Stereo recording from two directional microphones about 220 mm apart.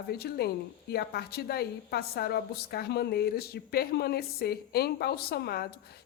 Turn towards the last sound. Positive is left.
turn(degrees=45)  # may be behind; listen again after turning